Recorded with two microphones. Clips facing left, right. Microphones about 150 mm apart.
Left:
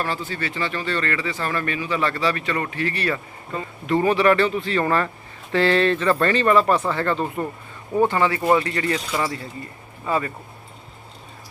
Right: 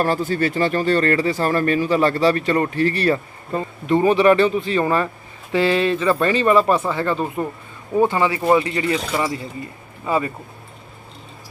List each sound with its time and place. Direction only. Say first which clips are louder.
0.0 s speech: right 8 dB; 45° right (ahead or behind)
3.8 s speech: right 3 dB; 20° right (ahead or behind)